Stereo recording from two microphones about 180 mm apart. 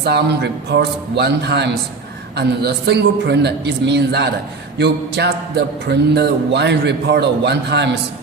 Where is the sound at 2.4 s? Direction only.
70° right (ahead or behind).